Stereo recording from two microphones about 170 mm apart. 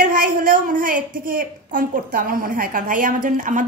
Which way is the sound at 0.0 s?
55° right (ahead or behind).